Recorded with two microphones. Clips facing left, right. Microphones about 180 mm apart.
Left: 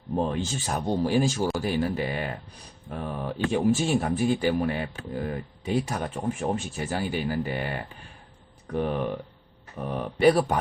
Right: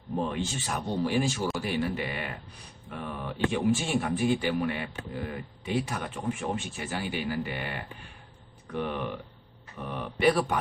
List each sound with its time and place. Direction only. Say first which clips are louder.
0.3 s speech: left 3 dB; 40° left (ahead or behind)